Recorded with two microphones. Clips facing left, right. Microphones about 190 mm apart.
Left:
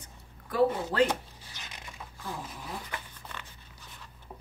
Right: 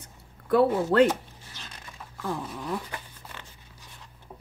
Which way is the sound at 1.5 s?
15° left (ahead or behind).